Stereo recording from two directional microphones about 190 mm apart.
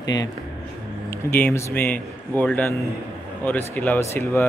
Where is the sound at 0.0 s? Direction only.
20° left (ahead or behind).